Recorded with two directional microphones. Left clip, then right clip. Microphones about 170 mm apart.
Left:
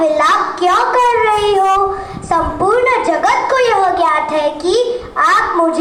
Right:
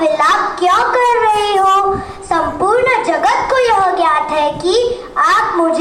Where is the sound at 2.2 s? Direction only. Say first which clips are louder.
Even; 35° left (ahead or behind).